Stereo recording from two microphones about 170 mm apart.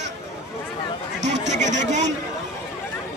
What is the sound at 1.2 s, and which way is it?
Chatter, 90° right.